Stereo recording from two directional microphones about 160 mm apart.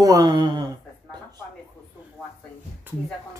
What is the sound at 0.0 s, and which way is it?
Speech, 25° right (ahead or behind).